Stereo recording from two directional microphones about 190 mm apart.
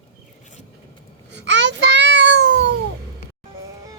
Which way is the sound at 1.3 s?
65° right (ahead or behind).